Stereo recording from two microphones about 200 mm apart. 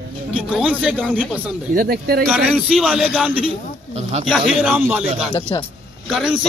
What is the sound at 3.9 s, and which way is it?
Speech, 35° right (ahead or behind).